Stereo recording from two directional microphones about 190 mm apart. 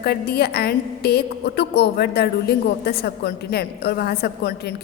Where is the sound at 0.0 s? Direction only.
55° left (ahead or behind).